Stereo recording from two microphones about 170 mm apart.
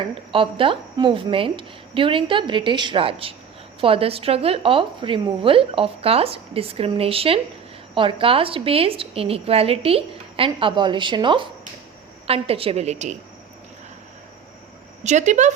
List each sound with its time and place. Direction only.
0.1 s a woman's voice: 30° right (ahead or behind)
15.0 s speech: 45° right (ahead or behind)